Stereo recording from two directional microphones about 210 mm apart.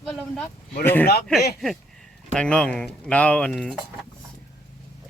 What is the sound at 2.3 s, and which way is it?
Speech, 5° left (ahead or behind).